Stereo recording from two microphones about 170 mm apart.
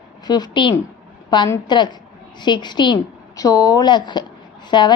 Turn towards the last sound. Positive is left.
turn(degrees=25)  # may be behind; listen again after turning